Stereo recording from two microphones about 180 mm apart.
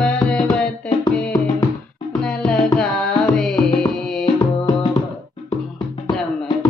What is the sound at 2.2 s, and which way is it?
Music, 5° left (ahead or behind).